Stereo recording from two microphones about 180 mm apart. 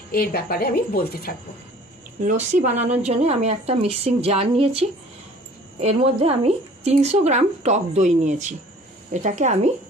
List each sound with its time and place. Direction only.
0.1 s speech: 55° left (ahead or behind)
2.5 s speech: 45° right (ahead or behind)